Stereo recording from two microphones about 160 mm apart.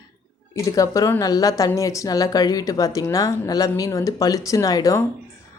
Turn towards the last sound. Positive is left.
turn(degrees=20)  # may be behind; listen again after turning